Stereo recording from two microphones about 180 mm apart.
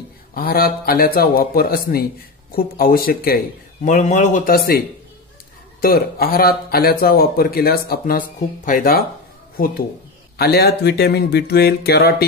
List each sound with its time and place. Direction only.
0.3 s speech: 55° left (ahead or behind)
3.8 s a man's voice: 45° left (ahead or behind)
5.8 s speech: 55° left (ahead or behind)
10.3 s speech: 60° left (ahead or behind)